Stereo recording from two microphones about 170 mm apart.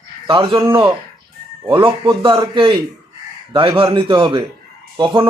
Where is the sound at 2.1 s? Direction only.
25° right (ahead or behind).